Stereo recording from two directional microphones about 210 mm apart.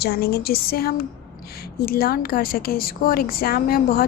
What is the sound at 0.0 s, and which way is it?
A woman's voice, 50° left (ahead or behind).